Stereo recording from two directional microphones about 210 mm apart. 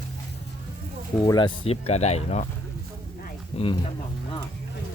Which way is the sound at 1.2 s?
20° left (ahead or behind).